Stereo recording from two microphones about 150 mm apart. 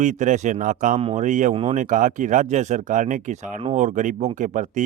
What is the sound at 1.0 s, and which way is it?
Speech, 40° right (ahead or behind).